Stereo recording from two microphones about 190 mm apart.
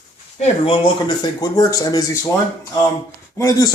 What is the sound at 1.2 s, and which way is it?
Speech, 20° left (ahead or behind).